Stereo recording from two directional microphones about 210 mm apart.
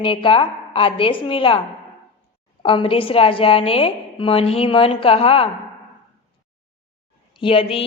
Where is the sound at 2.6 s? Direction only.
25° left (ahead or behind).